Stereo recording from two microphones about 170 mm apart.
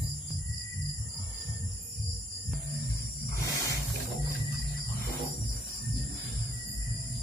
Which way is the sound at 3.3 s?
15° left (ahead or behind).